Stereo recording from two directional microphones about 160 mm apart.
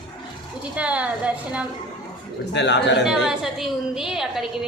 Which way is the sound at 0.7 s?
10° right (ahead or behind).